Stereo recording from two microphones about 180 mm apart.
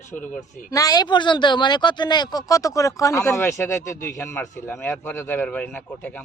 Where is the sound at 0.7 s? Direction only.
20° left (ahead or behind).